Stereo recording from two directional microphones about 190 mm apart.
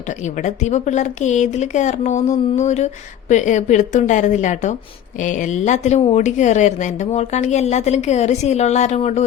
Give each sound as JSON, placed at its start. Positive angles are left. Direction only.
{"t": 0.3, "sound": "a woman's voice", "side_deg": 40}